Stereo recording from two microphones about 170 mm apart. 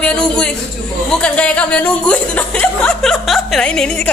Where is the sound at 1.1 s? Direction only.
5° left (ahead or behind).